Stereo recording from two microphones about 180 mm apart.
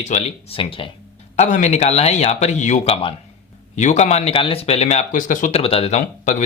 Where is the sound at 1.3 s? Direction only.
40° left (ahead or behind).